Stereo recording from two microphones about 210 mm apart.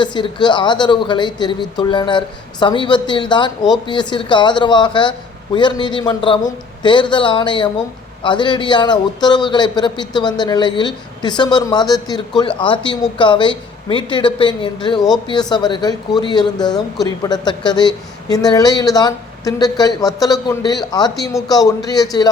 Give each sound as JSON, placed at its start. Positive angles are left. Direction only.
{"t": 0.0, "sound": "speech", "side_deg": 20}